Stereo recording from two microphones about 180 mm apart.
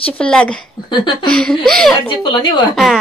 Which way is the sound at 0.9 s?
25° left (ahead or behind).